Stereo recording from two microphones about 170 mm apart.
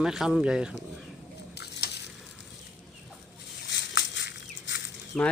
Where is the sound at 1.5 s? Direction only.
75° left (ahead or behind).